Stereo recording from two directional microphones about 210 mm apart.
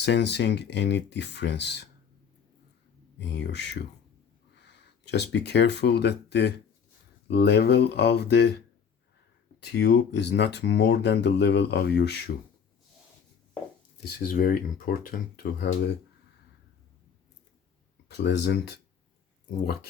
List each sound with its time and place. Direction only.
0.0 s speech: 55° left (ahead or behind)
3.2 s speech: 55° left (ahead or behind)
14.2 s speech: 40° left (ahead or behind)
18.2 s speech: 55° left (ahead or behind)